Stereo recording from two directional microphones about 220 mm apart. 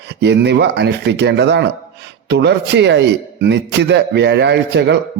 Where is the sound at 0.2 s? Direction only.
50° right (ahead or behind).